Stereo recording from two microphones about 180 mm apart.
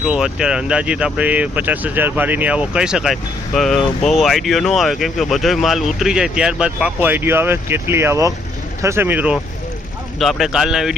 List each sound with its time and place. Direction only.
0.0 s speech: 5° right (ahead or behind)